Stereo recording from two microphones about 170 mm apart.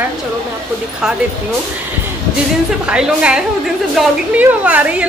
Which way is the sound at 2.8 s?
5° right (ahead or behind).